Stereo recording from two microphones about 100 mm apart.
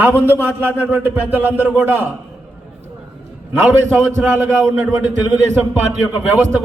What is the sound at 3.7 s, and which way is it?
Speech, 20° right (ahead or behind).